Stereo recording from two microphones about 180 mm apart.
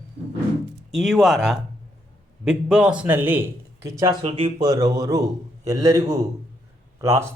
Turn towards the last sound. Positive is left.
turn(degrees=-15)  # may be behind; listen again after turning